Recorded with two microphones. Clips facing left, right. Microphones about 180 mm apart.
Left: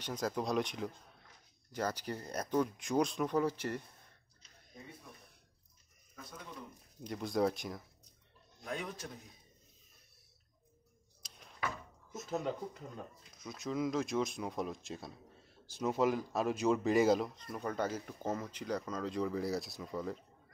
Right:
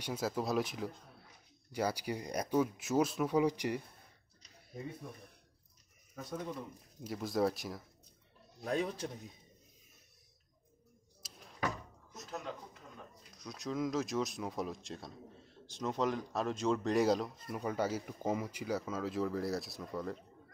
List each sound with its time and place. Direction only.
0.0 s speech: 5° right (ahead or behind)
7.0 s speech: 5° right (ahead or behind)
8.6 s a man's voice: 30° right (ahead or behind)
11.2 s a sound: centre (ahead or behind)
13.4 s speech: centre (ahead or behind)